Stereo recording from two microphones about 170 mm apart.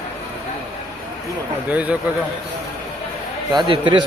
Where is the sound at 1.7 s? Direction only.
10° right (ahead or behind).